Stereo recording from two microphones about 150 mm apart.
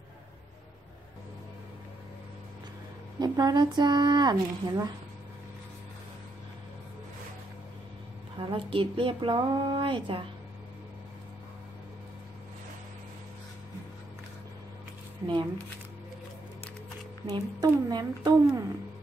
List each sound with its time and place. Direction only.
3.2 s speech: 25° right (ahead or behind)
8.4 s speech: 35° right (ahead or behind)
17.3 s speech: 25° right (ahead or behind)